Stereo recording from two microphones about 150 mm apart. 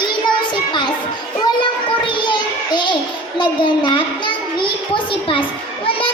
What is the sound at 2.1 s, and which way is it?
Child singing, 30° left (ahead or behind).